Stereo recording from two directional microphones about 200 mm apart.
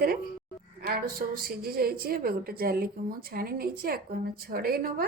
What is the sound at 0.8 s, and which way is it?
A woman's voice, 50° right (ahead or behind).